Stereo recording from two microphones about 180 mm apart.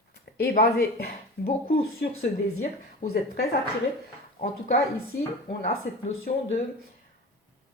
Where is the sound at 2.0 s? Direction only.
65° left (ahead or behind).